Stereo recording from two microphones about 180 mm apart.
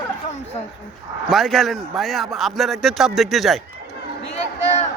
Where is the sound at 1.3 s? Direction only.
Centre (ahead or behind).